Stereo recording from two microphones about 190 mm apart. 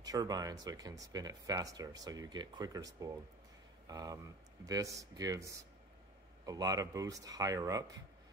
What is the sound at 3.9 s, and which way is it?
Speech, 20° right (ahead or behind).